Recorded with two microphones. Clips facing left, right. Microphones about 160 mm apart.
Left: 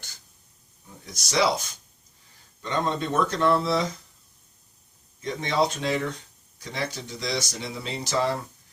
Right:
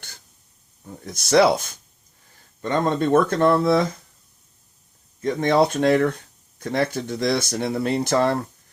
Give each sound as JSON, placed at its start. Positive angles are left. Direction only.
{"t": 1.0, "sound": "speech", "side_deg": -55}
{"t": 5.2, "sound": "speech", "side_deg": -50}